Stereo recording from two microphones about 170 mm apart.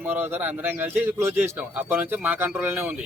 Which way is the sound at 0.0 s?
10° right (ahead or behind).